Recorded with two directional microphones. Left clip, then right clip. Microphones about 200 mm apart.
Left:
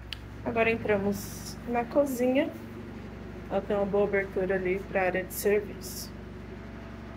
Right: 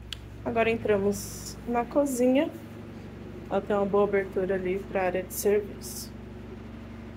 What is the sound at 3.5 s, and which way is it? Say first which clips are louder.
Speech: right 2 dB; 25° right (ahead or behind).